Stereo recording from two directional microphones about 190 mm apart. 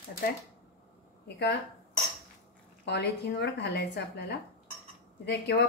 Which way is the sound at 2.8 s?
60° left (ahead or behind).